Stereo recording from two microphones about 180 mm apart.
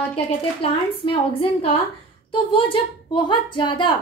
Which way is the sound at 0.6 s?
30° left (ahead or behind).